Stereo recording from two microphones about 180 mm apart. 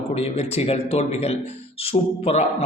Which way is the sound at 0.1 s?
35° left (ahead or behind).